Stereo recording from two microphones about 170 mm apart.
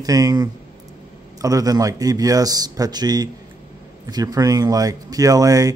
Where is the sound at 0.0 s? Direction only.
20° right (ahead or behind).